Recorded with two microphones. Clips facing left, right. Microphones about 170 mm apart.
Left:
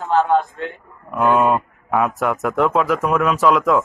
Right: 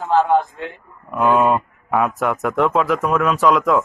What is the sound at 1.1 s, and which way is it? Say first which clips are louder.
A man's voice: even; centre (ahead or behind).